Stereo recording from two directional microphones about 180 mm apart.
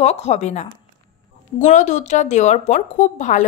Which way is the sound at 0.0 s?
40° left (ahead or behind).